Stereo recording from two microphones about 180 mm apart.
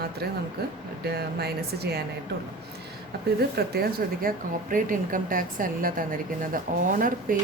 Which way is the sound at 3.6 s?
60° right (ahead or behind).